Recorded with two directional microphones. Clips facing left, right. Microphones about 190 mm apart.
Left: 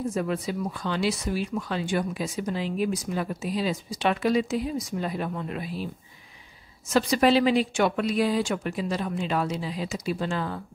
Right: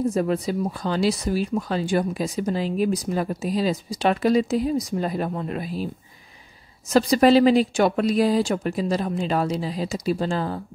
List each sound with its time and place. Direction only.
0.1 s speech: 40° right (ahead or behind)
6.9 s speech: 40° right (ahead or behind)